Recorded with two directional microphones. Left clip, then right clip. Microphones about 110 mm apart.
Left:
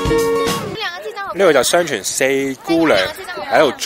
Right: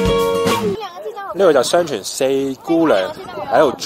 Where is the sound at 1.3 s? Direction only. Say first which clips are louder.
Even; 40° left (ahead or behind).